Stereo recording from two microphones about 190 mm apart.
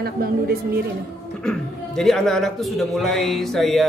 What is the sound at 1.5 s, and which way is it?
A man's voice, centre (ahead or behind).